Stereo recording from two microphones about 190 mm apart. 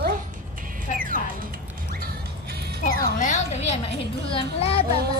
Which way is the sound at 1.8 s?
50° right (ahead or behind).